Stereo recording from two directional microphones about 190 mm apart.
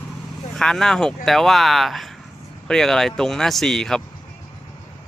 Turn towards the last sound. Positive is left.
turn(degrees=0)  # may be behind; listen again after turning